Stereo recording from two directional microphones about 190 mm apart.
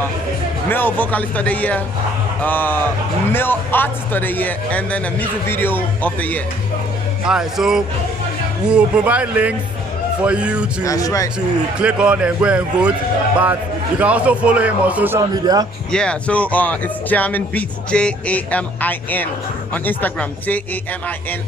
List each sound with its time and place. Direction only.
0.7 s a man's voice: 10° left (ahead or behind)
7.2 s a man's voice: 5° right (ahead or behind)
10.9 s a man's voice: 15° left (ahead or behind)
11.8 s a man's voice: 5° right (ahead or behind)
15.9 s a man's voice: 5° left (ahead or behind)